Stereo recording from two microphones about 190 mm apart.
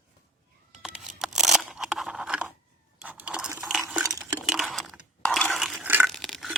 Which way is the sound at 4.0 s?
15° right (ahead or behind).